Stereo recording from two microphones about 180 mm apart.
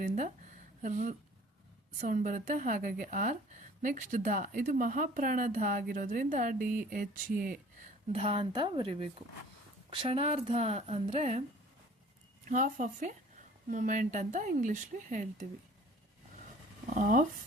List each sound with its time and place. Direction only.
0.0 s a sound: 45° right (ahead or behind)
0.8 s a woman's voice: 45° right (ahead or behind)
8.1 s speech: 30° right (ahead or behind)
12.5 s a woman's voice: 45° right (ahead or behind)
16.9 s a woman's voice: 45° right (ahead or behind)